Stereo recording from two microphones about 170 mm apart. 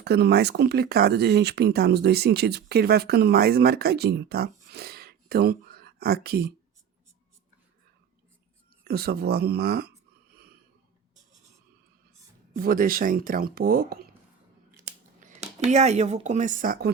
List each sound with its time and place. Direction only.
0.0 s speech: 75° right (ahead or behind)
8.8 s speech: 70° right (ahead or behind)
12.5 s speech: 60° right (ahead or behind)
15.2 s speech: 40° right (ahead or behind)